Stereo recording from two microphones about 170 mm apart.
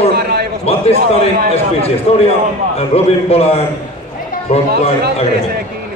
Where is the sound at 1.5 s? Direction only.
35° left (ahead or behind).